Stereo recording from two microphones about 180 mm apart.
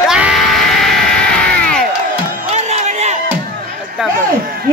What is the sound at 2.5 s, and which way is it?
Crowd, 40° right (ahead or behind).